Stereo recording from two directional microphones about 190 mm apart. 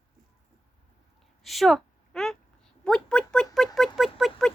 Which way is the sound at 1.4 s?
Centre (ahead or behind).